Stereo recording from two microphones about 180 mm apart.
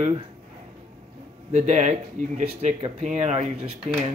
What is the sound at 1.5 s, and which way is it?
Speech, 40° right (ahead or behind).